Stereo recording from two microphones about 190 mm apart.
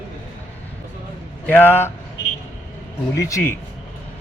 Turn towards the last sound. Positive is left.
turn(degrees=15)  # may be behind; listen again after turning